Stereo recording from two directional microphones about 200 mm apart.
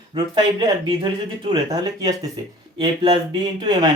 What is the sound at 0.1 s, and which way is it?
Speech, 25° right (ahead or behind).